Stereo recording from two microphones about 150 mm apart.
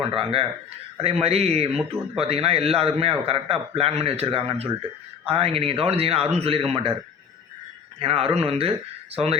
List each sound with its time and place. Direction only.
0.1 s a man's voice: 35° right (ahead or behind)
7.9 s a man's voice: 40° right (ahead or behind)